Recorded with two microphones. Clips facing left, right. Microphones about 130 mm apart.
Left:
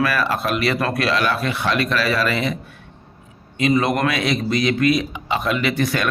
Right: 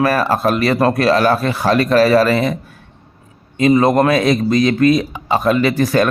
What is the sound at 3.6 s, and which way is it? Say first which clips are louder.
Speech: right 6 dB; 35° right (ahead or behind).